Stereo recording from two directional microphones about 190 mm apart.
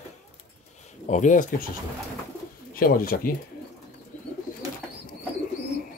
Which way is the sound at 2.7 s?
50° left (ahead or behind).